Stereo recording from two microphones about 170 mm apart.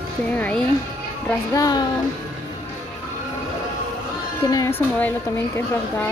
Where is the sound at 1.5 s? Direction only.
25° left (ahead or behind).